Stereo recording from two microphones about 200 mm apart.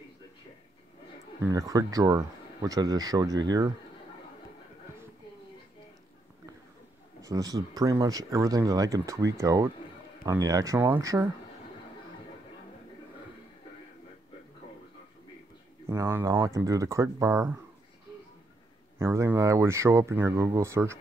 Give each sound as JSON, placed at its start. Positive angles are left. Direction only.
{"t": 1.4, "sound": "speech", "side_deg": -15}
{"t": 7.2, "sound": "speech", "side_deg": -15}
{"t": 15.9, "sound": "speech", "side_deg": -15}
{"t": 18.9, "sound": "speech", "side_deg": -10}